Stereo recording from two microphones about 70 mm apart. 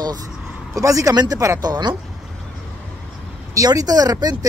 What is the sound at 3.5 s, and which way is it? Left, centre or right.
Speech, right.